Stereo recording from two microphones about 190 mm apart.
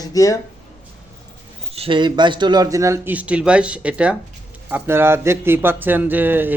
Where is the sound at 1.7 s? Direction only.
30° right (ahead or behind).